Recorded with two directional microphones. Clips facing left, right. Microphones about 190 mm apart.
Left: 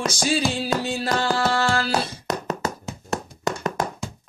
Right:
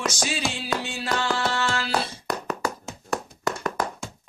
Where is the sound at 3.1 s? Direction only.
20° left (ahead or behind).